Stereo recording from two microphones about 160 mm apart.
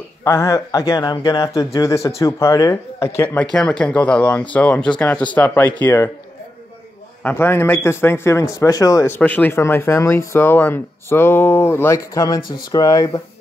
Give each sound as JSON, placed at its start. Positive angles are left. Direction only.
{"t": 0.2, "sound": "speech", "side_deg": 20}
{"t": 3.5, "sound": "speech", "side_deg": 5}
{"t": 7.2, "sound": "speech", "side_deg": 10}